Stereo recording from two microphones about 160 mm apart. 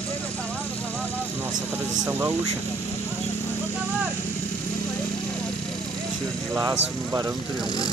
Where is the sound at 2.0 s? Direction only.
15° right (ahead or behind).